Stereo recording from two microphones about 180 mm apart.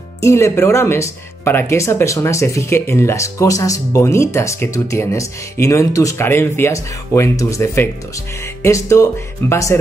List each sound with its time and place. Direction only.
0.2 s speech: 15° left (ahead or behind)